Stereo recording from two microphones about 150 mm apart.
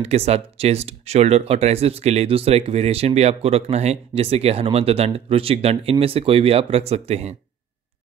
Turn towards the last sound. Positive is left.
turn(degrees=-45)  # may be behind; listen again after turning